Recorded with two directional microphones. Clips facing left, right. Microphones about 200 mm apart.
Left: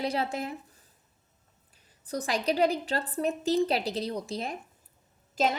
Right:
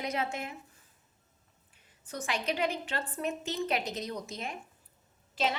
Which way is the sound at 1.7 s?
35° left (ahead or behind).